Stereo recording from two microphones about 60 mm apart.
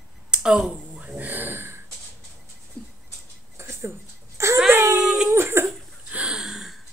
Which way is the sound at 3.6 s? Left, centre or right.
Right.